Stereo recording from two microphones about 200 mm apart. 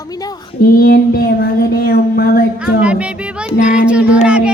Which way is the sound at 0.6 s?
45° left (ahead or behind).